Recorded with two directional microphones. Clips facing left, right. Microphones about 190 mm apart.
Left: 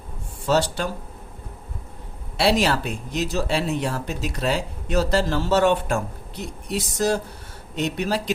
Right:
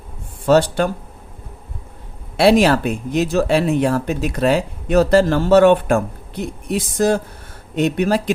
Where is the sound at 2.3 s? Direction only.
55° right (ahead or behind).